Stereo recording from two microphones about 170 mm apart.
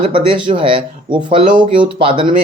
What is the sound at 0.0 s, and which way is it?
Speech, 30° right (ahead or behind).